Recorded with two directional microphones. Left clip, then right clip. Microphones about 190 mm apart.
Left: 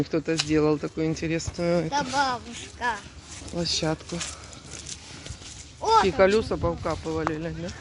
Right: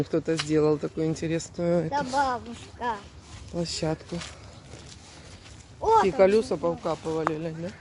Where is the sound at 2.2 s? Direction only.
35° right (ahead or behind).